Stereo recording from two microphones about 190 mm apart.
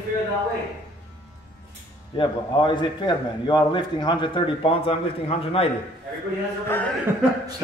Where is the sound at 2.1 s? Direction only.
25° left (ahead or behind).